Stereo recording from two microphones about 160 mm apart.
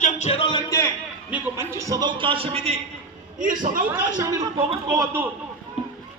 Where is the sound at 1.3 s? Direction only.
15° right (ahead or behind); by 2.7 s 40° right (ahead or behind).